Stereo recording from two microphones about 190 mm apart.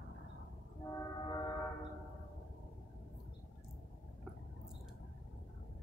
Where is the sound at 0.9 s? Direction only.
20° left (ahead or behind).